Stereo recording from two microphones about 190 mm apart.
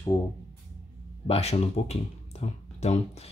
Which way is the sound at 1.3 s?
30° left (ahead or behind).